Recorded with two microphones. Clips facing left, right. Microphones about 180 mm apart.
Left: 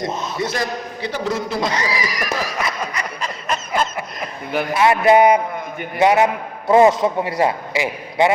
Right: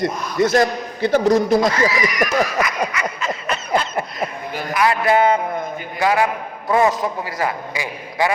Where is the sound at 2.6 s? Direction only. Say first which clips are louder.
Right 3 dB; 35° left (ahead or behind).